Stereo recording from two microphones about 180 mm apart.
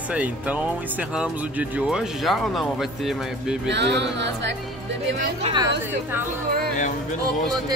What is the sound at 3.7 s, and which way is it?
Speech, 75° right (ahead or behind).